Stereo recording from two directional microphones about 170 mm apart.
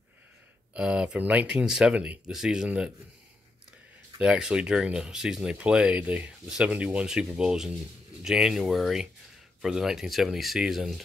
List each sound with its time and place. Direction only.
0.7 s speech: 5° right (ahead or behind)
4.2 s speech: 5° right (ahead or behind)